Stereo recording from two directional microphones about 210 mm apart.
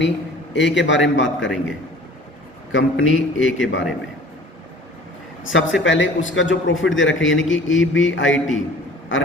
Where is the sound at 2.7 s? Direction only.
65° left (ahead or behind).